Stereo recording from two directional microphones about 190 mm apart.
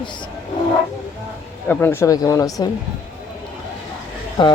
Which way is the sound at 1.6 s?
10° left (ahead or behind).